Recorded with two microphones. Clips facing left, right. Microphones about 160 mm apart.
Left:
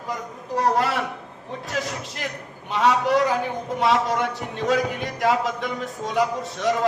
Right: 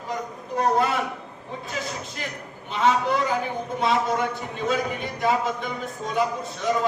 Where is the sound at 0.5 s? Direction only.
90° left.